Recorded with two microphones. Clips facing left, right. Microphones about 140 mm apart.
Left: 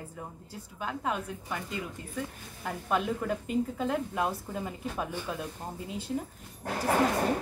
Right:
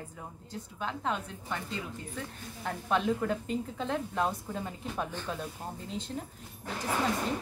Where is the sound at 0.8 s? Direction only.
5° left (ahead or behind).